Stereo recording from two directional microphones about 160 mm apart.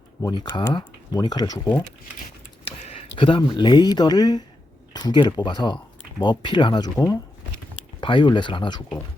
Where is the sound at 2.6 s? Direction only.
40° left (ahead or behind).